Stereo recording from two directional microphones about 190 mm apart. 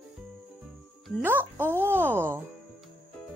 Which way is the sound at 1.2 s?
10° right (ahead or behind).